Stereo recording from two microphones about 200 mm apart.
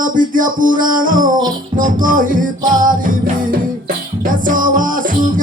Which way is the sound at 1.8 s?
40° right (ahead or behind).